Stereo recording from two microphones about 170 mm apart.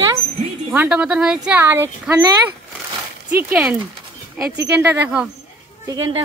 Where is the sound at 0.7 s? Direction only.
10° right (ahead or behind).